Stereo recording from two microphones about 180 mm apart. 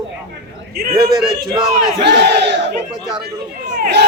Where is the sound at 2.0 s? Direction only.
70° right (ahead or behind).